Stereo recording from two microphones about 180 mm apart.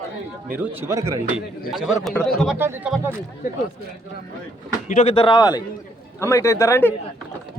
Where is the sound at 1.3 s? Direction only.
Centre (ahead or behind).